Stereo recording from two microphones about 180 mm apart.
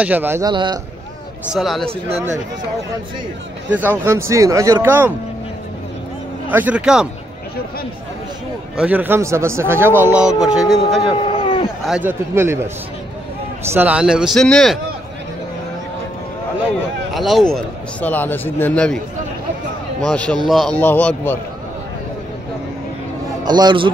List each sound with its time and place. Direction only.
0.0 s speech: 10° right (ahead or behind)
0.5 s speech: 25° right (ahead or behind)
1.5 s speech: centre (ahead or behind)
1.9 s speech: 35° right (ahead or behind)
3.7 s speech: 10° right (ahead or behind)
6.5 s speech: 10° right (ahead or behind)
8.7 s speech: 10° right (ahead or behind)
11.0 s a sound: 30° left (ahead or behind)
11.8 s speech: 5° right (ahead or behind)
13.7 s speech: 5° right (ahead or behind)
17.1 s a man's voice: centre (ahead or behind)
20.1 s a man's voice: 5° left (ahead or behind)
23.4 s a man's voice: 25° right (ahead or behind)